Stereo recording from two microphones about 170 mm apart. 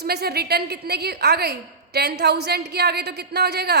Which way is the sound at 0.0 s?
70° right (ahead or behind).